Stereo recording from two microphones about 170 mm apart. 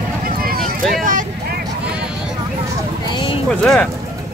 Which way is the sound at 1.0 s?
50° right (ahead or behind).